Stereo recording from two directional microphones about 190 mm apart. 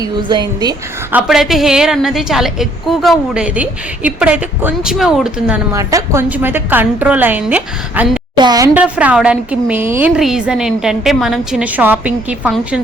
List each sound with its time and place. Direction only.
0.0 s a woman's voice: 25° right (ahead or behind)
1.1 s a woman's voice: centre (ahead or behind)
5.7 s a woman's voice: 15° right (ahead or behind)
8.4 s a woman's voice: 20° right (ahead or behind)
8.7 s a woman's voice: 5° right (ahead or behind)